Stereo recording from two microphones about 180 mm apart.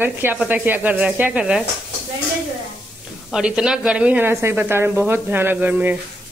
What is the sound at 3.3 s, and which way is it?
Speech, 5° right (ahead or behind).